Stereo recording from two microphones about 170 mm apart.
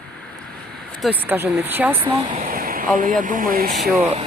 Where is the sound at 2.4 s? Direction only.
55° right (ahead or behind).